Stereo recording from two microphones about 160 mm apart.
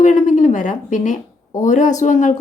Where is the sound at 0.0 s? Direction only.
50° left (ahead or behind).